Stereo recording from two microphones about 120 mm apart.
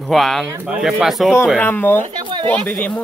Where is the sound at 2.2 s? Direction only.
40° right (ahead or behind).